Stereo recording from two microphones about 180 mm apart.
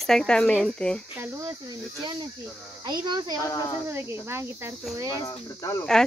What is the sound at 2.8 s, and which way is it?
Speech, 25° right (ahead or behind).